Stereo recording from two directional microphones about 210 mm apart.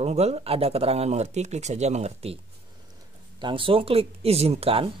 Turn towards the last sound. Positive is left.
turn(degrees=-25)  # may be behind; listen again after turning